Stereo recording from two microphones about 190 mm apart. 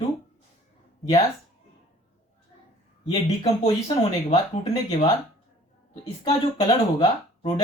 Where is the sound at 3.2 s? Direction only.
35° left (ahead or behind).